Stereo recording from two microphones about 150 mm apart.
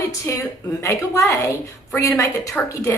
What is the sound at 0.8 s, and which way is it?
A woman's voice, 20° left (ahead or behind).